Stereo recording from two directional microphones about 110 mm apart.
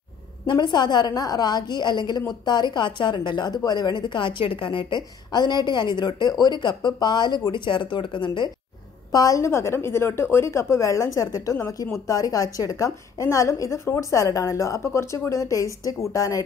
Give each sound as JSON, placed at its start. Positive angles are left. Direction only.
{"t": 0.5, "sound": "a woman's voice", "side_deg": 40}
{"t": 9.1, "sound": "a woman's voice", "side_deg": 30}